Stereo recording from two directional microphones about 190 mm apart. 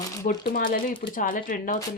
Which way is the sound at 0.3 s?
45° left (ahead or behind).